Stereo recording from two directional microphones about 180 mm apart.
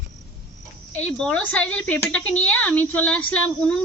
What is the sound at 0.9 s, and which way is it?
Speech, 10° left (ahead or behind).